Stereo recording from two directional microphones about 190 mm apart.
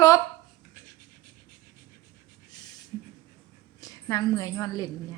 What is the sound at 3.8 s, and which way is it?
A woman's voice, 15° left (ahead or behind).